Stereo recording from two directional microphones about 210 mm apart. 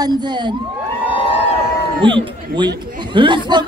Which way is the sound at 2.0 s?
20° right (ahead or behind).